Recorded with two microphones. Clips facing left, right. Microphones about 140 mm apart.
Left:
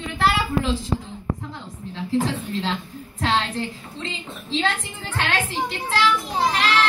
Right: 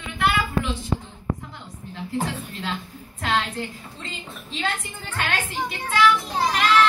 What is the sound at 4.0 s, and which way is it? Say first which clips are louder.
Speech: left 5 dB; 90° left.